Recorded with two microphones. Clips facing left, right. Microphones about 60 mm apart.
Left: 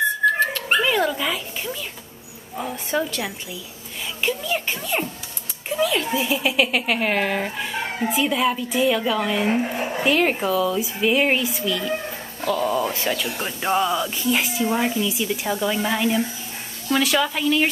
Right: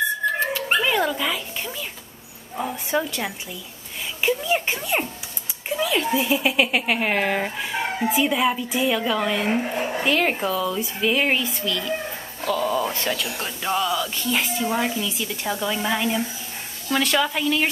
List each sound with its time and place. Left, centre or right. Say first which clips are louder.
0.5 s dog: left 1 dB; centre
2.5 s speech: right 1 dB; centre
4.2 s speech: right 3 dB; centre
5.7 s speech: left 1 dB; centre; by 14.1 s left
14.1 s speech: left 2 dB; centre